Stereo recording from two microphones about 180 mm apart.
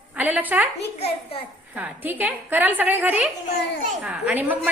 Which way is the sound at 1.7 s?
10° right (ahead or behind).